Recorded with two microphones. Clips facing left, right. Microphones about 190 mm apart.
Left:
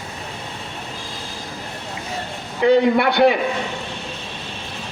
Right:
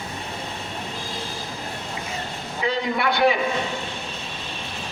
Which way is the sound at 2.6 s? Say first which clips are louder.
Left 9 dB; 60° left (ahead or behind).